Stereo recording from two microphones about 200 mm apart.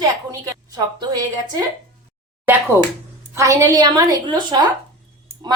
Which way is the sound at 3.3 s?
15° right (ahead or behind).